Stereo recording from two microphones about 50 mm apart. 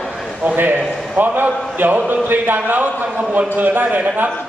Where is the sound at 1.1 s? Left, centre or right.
Right.